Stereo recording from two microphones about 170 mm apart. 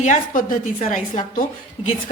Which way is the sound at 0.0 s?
45° left (ahead or behind).